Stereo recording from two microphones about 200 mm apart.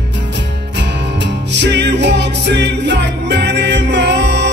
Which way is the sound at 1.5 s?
60° right (ahead or behind).